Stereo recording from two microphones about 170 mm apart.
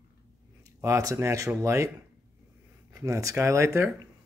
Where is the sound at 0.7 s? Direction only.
20° right (ahead or behind).